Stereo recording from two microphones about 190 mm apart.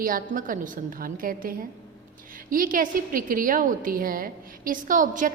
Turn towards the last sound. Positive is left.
turn(degrees=-45)  # may be behind; listen again after turning